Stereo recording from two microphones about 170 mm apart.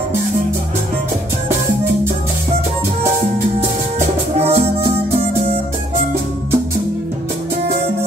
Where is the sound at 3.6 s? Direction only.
40° right (ahead or behind).